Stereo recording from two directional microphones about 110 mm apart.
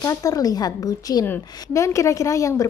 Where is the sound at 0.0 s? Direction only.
35° left (ahead or behind).